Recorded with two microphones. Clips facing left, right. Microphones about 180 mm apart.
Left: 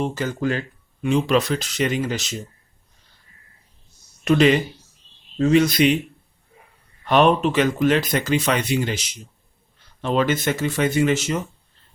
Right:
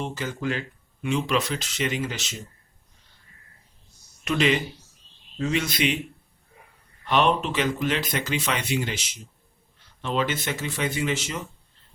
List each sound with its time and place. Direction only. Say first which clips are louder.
0.0 s speech: left 6 dB; 40° left (ahead or behind)
4.2 s speech: left 7 dB; 40° left (ahead or behind)
7.0 s speech: left 6 dB; 50° left (ahead or behind)